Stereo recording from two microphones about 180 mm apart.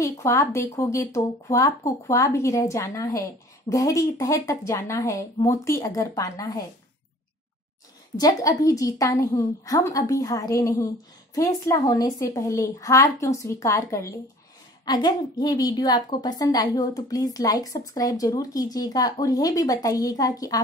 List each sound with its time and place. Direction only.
0.0 s speech: 15° left (ahead or behind)
8.2 s a woman's voice: 20° left (ahead or behind)